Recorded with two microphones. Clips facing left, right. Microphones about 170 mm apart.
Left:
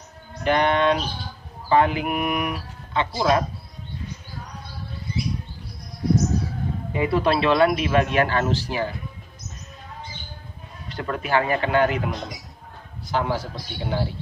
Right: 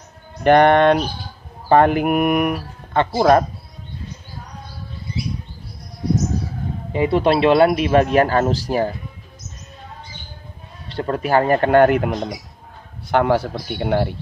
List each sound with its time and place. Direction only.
0.4 s a man's voice: 60° right (ahead or behind)
6.9 s speech: 25° right (ahead or behind)
10.9 s a man's voice: 30° right (ahead or behind); by 14.1 s 65° right (ahead or behind)